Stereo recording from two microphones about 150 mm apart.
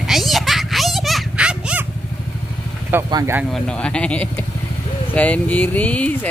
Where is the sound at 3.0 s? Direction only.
25° right (ahead or behind).